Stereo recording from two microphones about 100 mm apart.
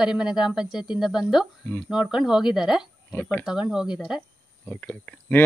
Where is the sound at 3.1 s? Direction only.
15° left (ahead or behind).